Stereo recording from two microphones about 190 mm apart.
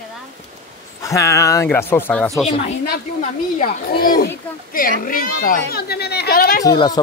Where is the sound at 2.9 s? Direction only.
45° left (ahead or behind).